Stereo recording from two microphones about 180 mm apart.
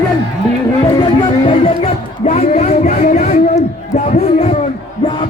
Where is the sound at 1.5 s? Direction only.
40° left (ahead or behind).